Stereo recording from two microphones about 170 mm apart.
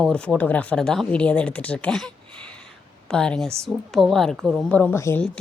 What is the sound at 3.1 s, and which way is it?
A woman's voice, 5° left (ahead or behind).